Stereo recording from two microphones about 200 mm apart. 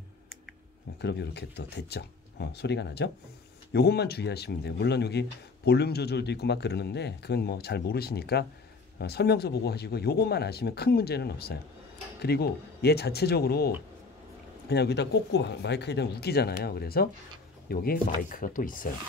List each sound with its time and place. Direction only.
1.0 s speech: 55° left (ahead or behind)
14.7 s speech: 55° left (ahead or behind)